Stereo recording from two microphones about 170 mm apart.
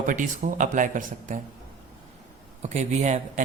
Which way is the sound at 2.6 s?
40° right (ahead or behind).